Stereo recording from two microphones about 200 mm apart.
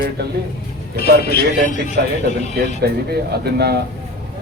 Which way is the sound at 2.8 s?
50° right (ahead or behind).